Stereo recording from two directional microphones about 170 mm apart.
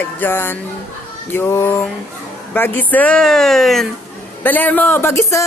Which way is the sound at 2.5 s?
10° left (ahead or behind).